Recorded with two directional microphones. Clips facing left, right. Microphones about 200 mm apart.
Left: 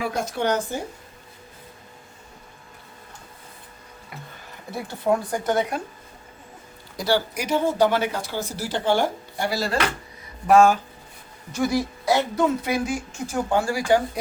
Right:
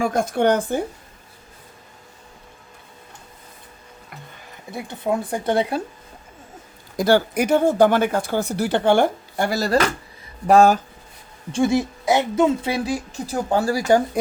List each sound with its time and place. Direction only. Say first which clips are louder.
0.0 s speech: right 6 dB; 50° right (ahead or behind)
4.7 s speech: left 1 dB; 25° right (ahead or behind)
6.9 s speech: right 6 dB; 50° right (ahead or behind)
11.5 s speech: right 4 dB; 25° right (ahead or behind); by 14.0 s 40° right (ahead or behind)